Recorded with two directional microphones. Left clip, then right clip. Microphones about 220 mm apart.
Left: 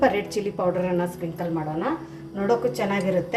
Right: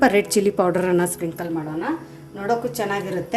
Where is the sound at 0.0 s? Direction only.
50° right (ahead or behind).